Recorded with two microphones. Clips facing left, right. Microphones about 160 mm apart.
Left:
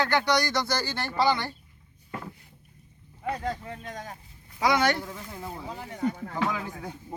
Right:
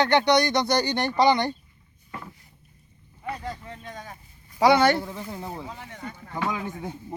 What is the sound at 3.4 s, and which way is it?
Speech, 65° left (ahead or behind).